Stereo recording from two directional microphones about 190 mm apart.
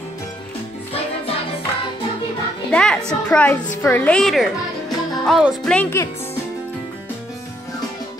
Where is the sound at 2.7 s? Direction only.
5° left (ahead or behind).